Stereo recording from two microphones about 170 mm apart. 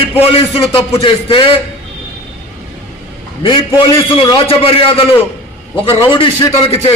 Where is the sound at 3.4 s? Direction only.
30° left (ahead or behind).